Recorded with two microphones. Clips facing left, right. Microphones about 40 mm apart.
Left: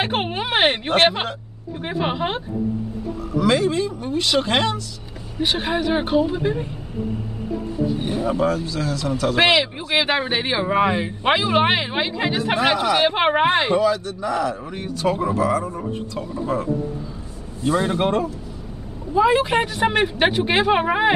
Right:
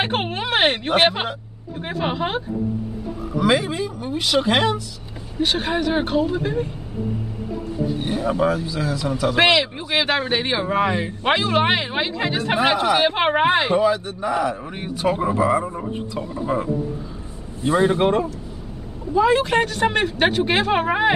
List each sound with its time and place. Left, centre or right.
0.0 s speech: centre
3.3 s speech: centre
5.4 s speech: centre
8.2 s speech: centre
9.5 s speech: centre
13.7 s speech: right
17.6 s speech: centre
17.9 s speech: centre
19.1 s a woman's voice: centre